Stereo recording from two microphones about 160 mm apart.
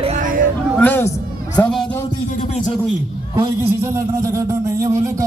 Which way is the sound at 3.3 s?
20° right (ahead or behind).